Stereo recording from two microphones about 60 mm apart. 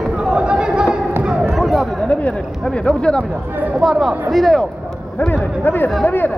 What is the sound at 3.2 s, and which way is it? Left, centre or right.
Speech, right.